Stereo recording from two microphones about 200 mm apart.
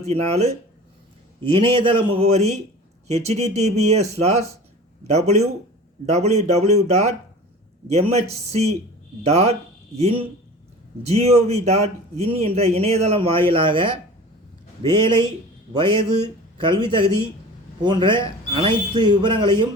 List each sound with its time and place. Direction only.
0.0 s a man's voice: 30° right (ahead or behind)